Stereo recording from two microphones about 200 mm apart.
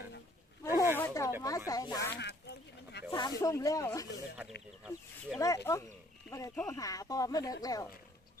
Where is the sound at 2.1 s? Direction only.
55° left (ahead or behind).